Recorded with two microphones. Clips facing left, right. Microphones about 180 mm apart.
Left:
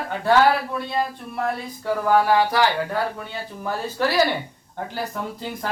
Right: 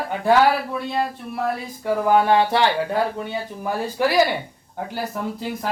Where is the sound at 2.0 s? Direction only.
20° right (ahead or behind).